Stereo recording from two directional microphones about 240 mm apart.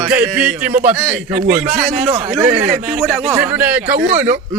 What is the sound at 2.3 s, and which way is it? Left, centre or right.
A man's voice, centre.